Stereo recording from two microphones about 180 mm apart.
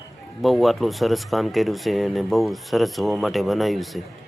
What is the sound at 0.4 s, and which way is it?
Speech, centre (ahead or behind).